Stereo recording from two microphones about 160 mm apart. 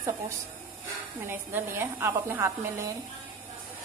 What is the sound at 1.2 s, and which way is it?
A woman's voice, 15° right (ahead or behind).